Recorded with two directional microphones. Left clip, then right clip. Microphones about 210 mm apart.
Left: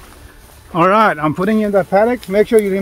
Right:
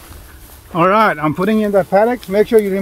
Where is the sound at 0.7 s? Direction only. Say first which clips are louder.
Left 1 dB; 15° left (ahead or behind).